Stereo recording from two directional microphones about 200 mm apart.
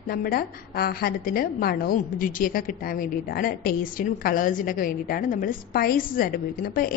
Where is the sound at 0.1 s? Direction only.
45° left (ahead or behind).